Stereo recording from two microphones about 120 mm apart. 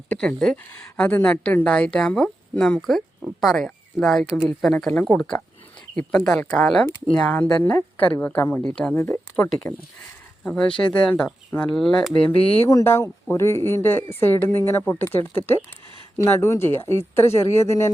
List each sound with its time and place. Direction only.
0.1 s a woman's voice: 10° left (ahead or behind)
9.0 s a woman's voice: 20° left (ahead or behind); by 12.1 s centre (ahead or behind)
12.6 s a woman's voice: 20° left (ahead or behind)